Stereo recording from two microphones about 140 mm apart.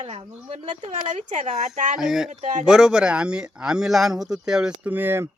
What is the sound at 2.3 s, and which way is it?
Speech, 60° right (ahead or behind).